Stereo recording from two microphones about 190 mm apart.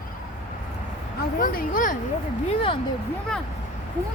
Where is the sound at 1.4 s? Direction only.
50° left (ahead or behind).